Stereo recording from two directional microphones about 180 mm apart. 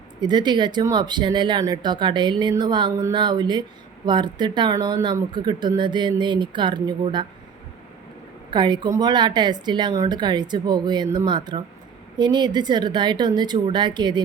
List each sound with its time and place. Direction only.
0.2 s speech: 25° right (ahead or behind)
8.4 s speech: 25° right (ahead or behind)